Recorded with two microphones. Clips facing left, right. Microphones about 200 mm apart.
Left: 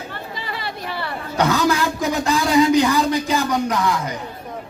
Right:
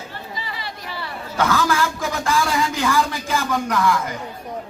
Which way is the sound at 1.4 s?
20° left (ahead or behind).